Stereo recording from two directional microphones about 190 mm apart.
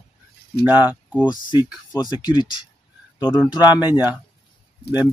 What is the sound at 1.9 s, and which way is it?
Speech, 20° left (ahead or behind).